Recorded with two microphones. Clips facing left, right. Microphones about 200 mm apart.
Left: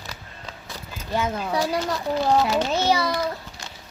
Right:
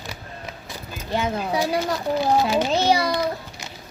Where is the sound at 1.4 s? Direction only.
30° right (ahead or behind).